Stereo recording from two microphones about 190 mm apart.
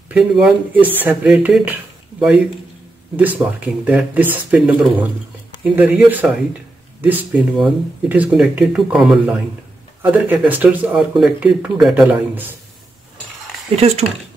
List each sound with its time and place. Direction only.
0.1 s speech: 5° right (ahead or behind)
13.7 s speech: 35° right (ahead or behind)